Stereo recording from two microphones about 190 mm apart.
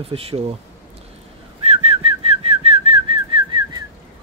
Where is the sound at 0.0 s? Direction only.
30° right (ahead or behind).